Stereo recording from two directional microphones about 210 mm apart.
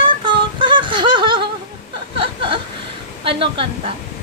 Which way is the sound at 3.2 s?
25° right (ahead or behind).